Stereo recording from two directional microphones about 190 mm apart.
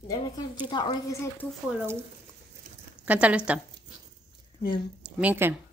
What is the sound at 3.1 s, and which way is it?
Speech, 5° right (ahead or behind).